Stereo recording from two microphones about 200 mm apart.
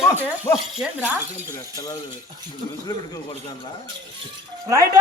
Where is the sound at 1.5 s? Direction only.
20° left (ahead or behind).